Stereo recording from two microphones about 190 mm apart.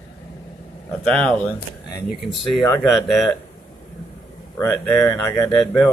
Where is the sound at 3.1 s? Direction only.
Centre (ahead or behind).